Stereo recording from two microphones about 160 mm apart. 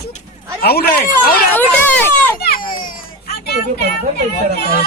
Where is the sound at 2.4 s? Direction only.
65° left (ahead or behind).